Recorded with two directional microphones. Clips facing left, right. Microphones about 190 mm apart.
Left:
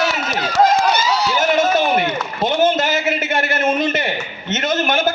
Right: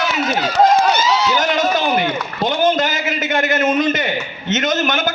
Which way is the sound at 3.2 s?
30° left (ahead or behind).